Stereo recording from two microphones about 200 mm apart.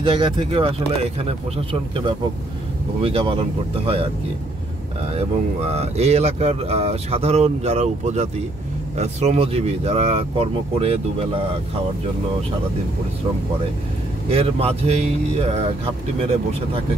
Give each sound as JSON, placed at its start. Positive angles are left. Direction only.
{"t": 0.0, "sound": "speech", "side_deg": -25}
{"t": 5.1, "sound": "speech", "side_deg": -30}
{"t": 14.3, "sound": "speech", "side_deg": -30}